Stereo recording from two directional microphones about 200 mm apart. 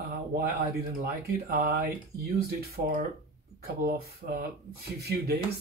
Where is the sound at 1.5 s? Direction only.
50° right (ahead or behind).